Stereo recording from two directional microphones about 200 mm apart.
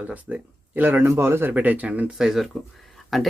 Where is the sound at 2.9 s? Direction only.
Centre (ahead or behind).